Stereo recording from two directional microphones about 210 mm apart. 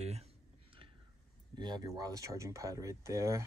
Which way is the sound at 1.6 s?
20° right (ahead or behind).